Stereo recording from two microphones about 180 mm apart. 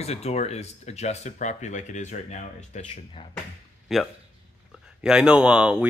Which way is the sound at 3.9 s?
Centre (ahead or behind).